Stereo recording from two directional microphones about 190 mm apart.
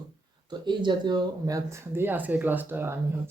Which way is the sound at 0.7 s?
25° right (ahead or behind).